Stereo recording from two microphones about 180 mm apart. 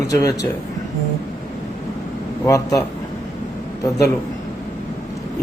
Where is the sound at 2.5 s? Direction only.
20° left (ahead or behind).